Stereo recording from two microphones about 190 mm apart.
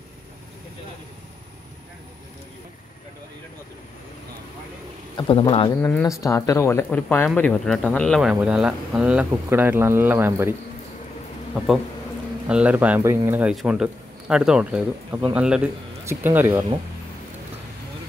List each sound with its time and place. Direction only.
5.1 s speech: 25° left (ahead or behind)
5.8 s speech: 10° left (ahead or behind); by 10.5 s 10° right (ahead or behind)
12.4 s a man's voice: 5° right (ahead or behind)